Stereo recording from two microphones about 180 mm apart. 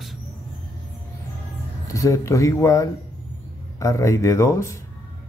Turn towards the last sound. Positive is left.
turn(degrees=15)  # may be behind; listen again after turning